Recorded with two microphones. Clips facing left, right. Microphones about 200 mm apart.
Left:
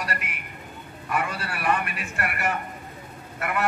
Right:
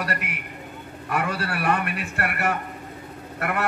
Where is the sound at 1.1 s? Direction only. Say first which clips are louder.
Right 3 dB; 60° right (ahead or behind).